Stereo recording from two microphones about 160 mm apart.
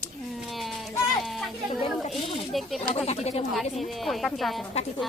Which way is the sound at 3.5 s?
Centre (ahead or behind).